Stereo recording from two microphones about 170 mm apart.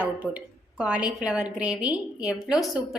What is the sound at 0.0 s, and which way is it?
A woman's voice, 10° right (ahead or behind).